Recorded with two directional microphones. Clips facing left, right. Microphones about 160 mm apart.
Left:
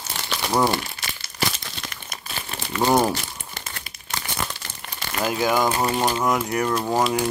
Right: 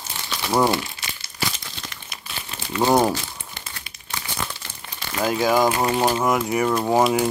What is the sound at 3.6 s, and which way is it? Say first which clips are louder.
Crumpling: left 2 dB; 45° left (ahead or behind).